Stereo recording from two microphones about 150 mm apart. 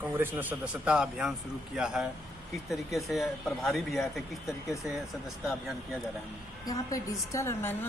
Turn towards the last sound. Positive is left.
turn(degrees=15)  # may be behind; listen again after turning